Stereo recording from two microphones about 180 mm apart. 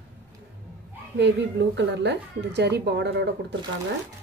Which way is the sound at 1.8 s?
70° right (ahead or behind).